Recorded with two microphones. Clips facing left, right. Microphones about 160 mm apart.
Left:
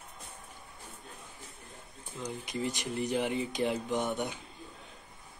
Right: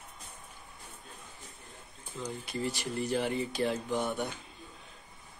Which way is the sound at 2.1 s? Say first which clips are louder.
Even; 15° left (ahead or behind).